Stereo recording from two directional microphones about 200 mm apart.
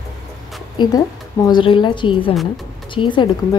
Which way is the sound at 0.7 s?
20° left (ahead or behind).